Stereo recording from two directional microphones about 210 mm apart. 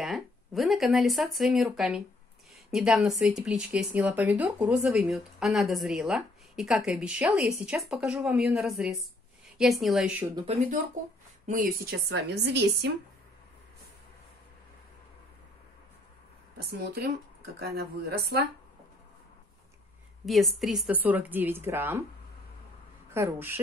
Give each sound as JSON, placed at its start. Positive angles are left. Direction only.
{"t": 0.0, "sound": "speech", "side_deg": 0}
{"t": 10.5, "sound": "speech", "side_deg": -30}
{"t": 11.4, "sound": "a woman's voice", "side_deg": -40}
{"t": 16.7, "sound": "a woman's voice", "side_deg": -50}
{"t": 20.2, "sound": "speech", "side_deg": 0}
{"t": 23.1, "sound": "speech", "side_deg": -10}